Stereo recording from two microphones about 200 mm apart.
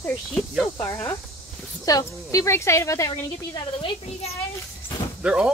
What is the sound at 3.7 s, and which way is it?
Speech, 25° left (ahead or behind).